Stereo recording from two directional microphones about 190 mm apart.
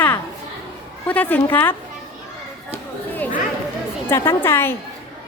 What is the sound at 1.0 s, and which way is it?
Speech, 10° left (ahead or behind).